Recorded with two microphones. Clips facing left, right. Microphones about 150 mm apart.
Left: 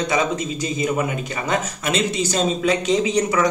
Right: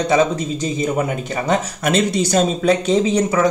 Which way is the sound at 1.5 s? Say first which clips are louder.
Right 4 dB; 45° right (ahead or behind).